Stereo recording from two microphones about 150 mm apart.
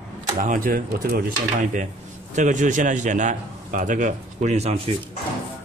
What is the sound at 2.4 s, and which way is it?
A man's voice, 55° right (ahead or behind).